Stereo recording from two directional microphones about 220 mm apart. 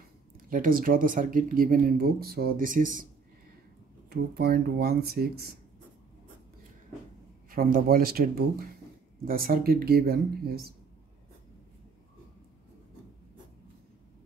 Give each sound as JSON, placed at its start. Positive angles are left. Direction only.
{"t": 0.5, "sound": "speech", "side_deg": -40}
{"t": 4.1, "sound": "speech", "side_deg": -45}
{"t": 7.4, "sound": "speech", "side_deg": -40}